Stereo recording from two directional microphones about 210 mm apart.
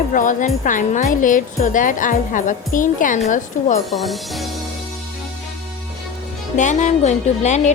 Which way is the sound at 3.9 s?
Centre (ahead or behind).